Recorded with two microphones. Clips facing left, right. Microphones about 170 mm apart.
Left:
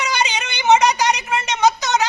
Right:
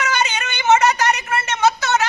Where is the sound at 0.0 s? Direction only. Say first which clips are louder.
Right 1 dB; 15° left (ahead or behind).